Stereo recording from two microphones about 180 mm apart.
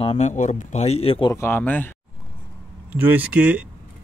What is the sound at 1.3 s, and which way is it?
Speech, 15° left (ahead or behind).